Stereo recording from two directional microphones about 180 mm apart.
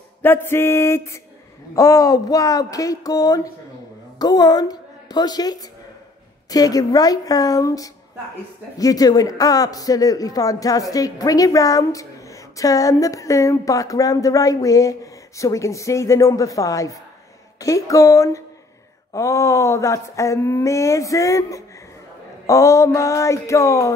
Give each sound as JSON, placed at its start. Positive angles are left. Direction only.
{"t": 0.2, "sound": "a woman's voice", "side_deg": 10}